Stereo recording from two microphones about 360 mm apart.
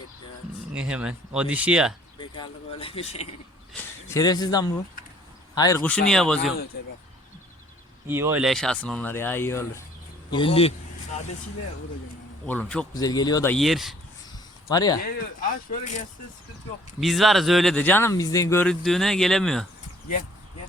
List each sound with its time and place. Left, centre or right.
0.7 s speech: centre
2.1 s speech: centre
8.0 s speech: centre
12.5 s speech: centre
14.7 s speech: centre
15.4 s speech: left
17.0 s speech: centre